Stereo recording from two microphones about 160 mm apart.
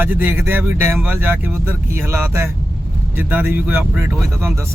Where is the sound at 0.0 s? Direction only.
15° right (ahead or behind).